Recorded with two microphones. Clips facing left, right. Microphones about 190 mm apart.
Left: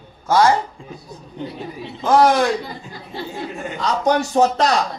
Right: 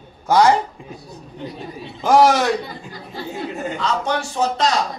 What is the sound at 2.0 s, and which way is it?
Speech, 10° right (ahead or behind).